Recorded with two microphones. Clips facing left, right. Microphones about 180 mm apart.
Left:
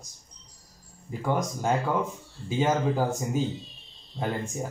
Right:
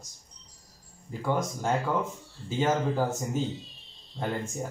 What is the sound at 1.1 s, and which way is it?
Speech, 15° left (ahead or behind).